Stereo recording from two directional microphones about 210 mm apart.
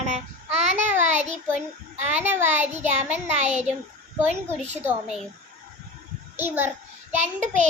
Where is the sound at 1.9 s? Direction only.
30° right (ahead or behind).